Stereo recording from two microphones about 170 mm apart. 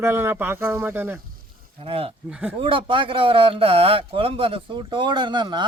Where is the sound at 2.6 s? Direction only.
30° right (ahead or behind).